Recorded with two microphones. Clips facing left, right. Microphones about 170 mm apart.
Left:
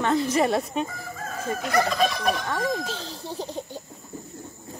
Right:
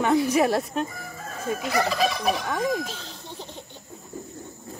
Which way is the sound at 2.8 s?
30° left (ahead or behind).